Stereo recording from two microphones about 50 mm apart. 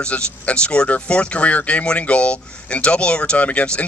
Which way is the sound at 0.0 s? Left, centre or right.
Left.